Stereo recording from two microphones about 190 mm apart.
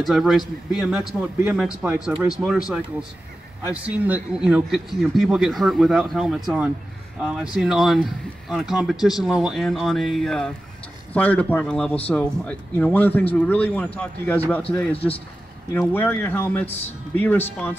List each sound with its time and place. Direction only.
0.0 s a man's voice: centre (ahead or behind)
15.0 s speech: 30° left (ahead or behind)
15.7 s a man's voice: 10° left (ahead or behind)